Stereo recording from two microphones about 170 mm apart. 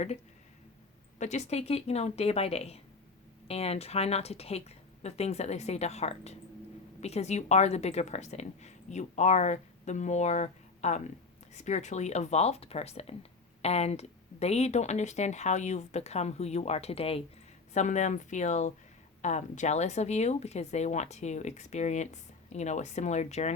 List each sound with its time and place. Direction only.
1.2 s speech: 40° left (ahead or behind)